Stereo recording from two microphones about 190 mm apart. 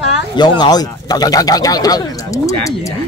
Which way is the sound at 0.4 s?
20° left (ahead or behind).